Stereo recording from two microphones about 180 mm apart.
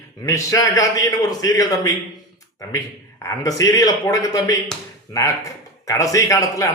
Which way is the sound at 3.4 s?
20° left (ahead or behind).